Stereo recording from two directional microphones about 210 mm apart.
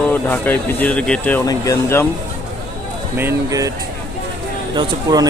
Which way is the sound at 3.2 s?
15° right (ahead or behind).